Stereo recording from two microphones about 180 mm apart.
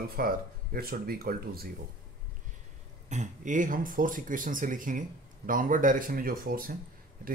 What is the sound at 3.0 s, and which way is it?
Speech, 40° right (ahead or behind).